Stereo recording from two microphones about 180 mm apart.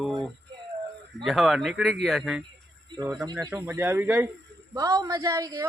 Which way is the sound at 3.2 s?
25° right (ahead or behind).